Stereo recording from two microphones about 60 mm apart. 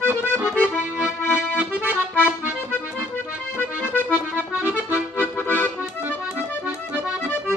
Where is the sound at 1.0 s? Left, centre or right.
Right.